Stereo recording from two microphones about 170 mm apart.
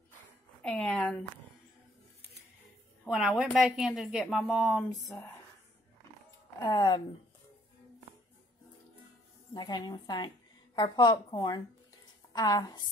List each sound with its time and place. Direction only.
0.6 s a woman's voice: 10° left (ahead or behind)
3.1 s a woman's voice: 5° right (ahead or behind)
4.8 s a woman's voice: 20° left (ahead or behind)
6.6 s a woman's voice: 25° left (ahead or behind)
9.5 s a woman's voice: 25° left (ahead or behind)